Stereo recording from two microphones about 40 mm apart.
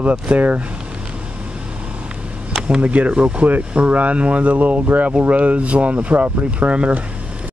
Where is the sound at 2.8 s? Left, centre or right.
Right.